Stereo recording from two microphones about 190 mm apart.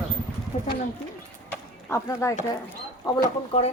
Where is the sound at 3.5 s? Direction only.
30° left (ahead or behind).